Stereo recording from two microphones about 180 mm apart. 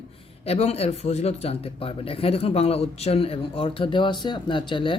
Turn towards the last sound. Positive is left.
turn(degrees=25)  # may be behind; listen again after turning